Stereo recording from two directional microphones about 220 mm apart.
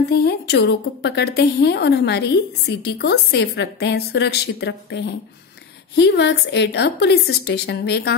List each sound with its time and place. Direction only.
0.1 s a woman's voice: 45° left (ahead or behind)